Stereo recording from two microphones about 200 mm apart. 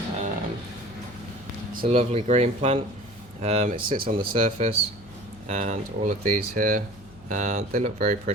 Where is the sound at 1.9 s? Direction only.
30° right (ahead or behind).